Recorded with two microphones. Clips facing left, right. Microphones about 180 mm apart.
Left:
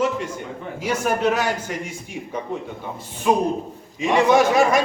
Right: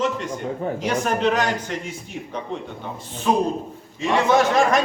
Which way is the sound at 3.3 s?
10° left (ahead or behind).